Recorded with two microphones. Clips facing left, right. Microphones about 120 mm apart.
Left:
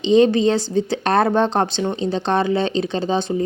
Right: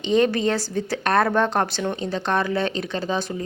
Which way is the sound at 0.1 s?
25° left (ahead or behind).